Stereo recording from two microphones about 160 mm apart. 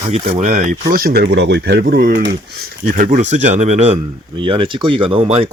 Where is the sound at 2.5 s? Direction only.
55° right (ahead or behind); by 5.4 s 35° right (ahead or behind).